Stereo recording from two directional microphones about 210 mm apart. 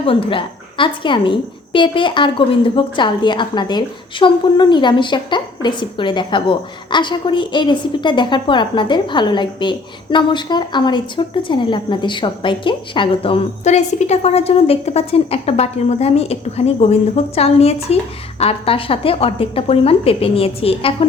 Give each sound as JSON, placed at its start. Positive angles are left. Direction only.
{"t": 0.0, "sound": "a woman's voice", "side_deg": 25}